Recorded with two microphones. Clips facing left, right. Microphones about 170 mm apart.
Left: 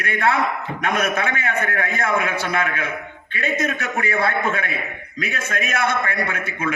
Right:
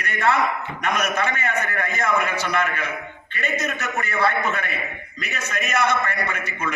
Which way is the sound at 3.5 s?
55° left (ahead or behind).